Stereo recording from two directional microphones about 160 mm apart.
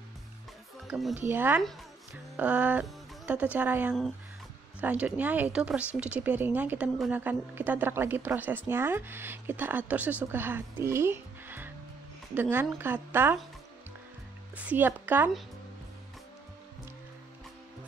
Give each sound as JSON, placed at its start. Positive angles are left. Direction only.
{"t": 0.8, "sound": "speech", "side_deg": 0}
{"t": 1.3, "sound": "a woman's voice", "side_deg": -10}
{"t": 14.6, "sound": "a woman's voice", "side_deg": -10}